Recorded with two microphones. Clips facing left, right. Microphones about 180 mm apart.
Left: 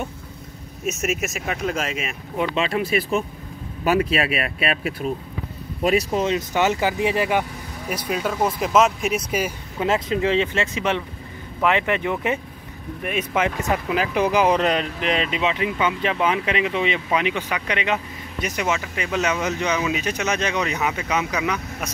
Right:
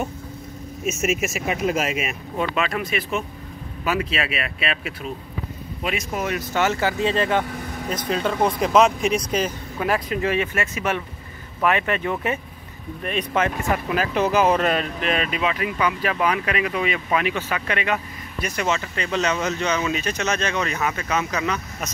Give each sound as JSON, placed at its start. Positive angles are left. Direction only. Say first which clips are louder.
{"t": 0.8, "sound": "speech", "louder": "right 1 dB", "side_deg": 0}
{"t": 2.5, "sound": "speech", "louder": "left 3 dB", "side_deg": 30}
{"t": 6.1, "sound": "speech", "louder": "left 3 dB", "side_deg": 20}
{"t": 9.8, "sound": "speech", "louder": "left 2 dB", "side_deg": 25}